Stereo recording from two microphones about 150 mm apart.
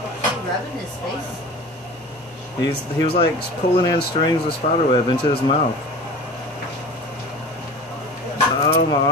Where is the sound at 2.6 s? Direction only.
35° left (ahead or behind).